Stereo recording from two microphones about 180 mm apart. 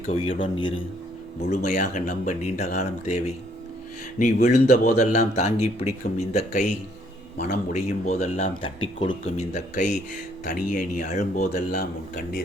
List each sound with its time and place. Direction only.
0.1 s a man's voice: 30° left (ahead or behind)
1.4 s speech: 40° left (ahead or behind)
7.7 s speech: 35° left (ahead or behind)
11.7 s a man's voice: 55° left (ahead or behind)